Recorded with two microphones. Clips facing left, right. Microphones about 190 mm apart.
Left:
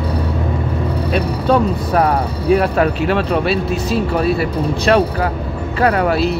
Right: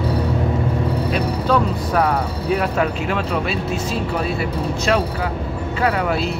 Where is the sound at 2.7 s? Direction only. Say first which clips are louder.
Left 5 dB; 55° left (ahead or behind).